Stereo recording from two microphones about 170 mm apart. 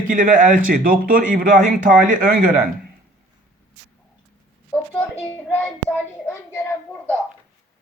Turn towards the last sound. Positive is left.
turn(degrees=10)  # may be behind; listen again after turning